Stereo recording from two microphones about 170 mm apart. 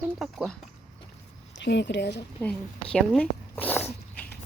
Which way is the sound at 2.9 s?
Centre (ahead or behind).